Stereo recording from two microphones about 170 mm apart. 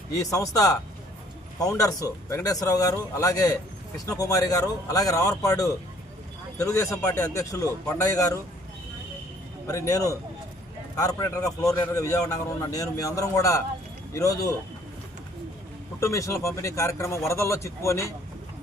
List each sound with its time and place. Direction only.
0.3 s speech: 20° left (ahead or behind)
9.6 s speech: 20° left (ahead or behind)
16.0 s speech: 15° left (ahead or behind)